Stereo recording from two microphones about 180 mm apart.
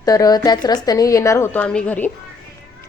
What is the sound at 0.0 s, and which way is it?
A woman's voice, 20° left (ahead or behind).